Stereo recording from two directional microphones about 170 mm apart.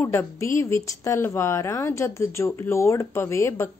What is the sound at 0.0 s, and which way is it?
Speech, 15° left (ahead or behind).